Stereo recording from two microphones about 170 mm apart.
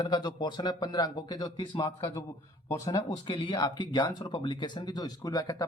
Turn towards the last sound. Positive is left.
turn(degrees=20)  # may be behind; listen again after turning